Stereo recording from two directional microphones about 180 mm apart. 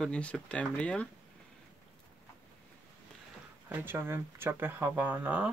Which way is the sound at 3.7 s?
10° right (ahead or behind).